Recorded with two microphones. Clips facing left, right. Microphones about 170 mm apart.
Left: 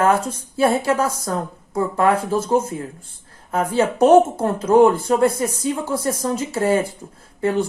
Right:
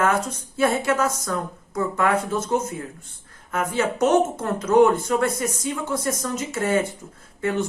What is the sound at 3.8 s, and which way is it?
Speech, 30° left (ahead or behind).